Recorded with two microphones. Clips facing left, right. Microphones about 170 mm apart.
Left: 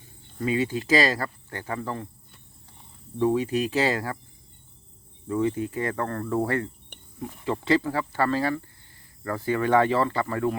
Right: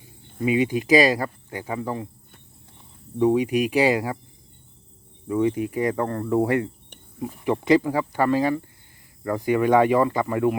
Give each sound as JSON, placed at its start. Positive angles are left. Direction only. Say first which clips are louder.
{"t": 0.0, "sound": "speech", "louder": "right 4 dB", "side_deg": -15}
{"t": 3.2, "sound": "speech", "louder": "right 4 dB", "side_deg": -15}
{"t": 5.3, "sound": "speech", "louder": "right 3 dB", "side_deg": -15}